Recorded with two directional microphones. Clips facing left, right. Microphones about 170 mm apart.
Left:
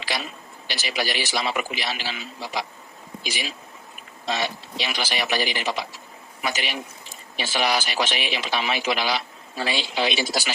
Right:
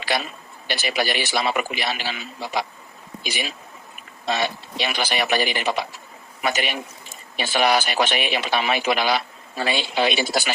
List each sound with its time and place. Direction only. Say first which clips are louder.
0.7 s a man's voice: right 4 dB; 55° right (ahead or behind)